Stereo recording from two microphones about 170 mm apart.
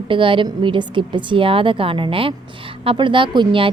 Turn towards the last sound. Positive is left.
turn(degrees=-30)  # may be behind; listen again after turning